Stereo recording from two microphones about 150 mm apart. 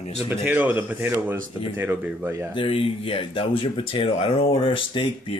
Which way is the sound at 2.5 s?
35° left (ahead or behind).